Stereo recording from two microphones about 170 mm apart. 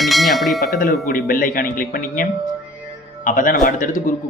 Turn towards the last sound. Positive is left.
turn(degrees=50)  # may be behind; listen again after turning